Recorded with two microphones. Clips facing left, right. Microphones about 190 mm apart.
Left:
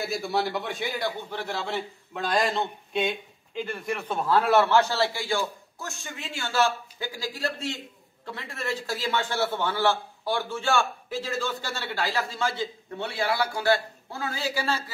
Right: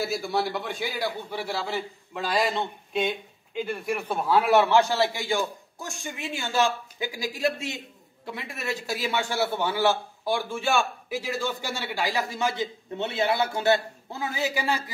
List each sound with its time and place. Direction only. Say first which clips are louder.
0.0 s a man's voice: right 1 dB; centre (ahead or behind); by 14.8 s 15° right (ahead or behind)